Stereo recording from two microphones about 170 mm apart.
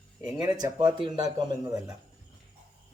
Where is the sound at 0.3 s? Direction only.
25° right (ahead or behind).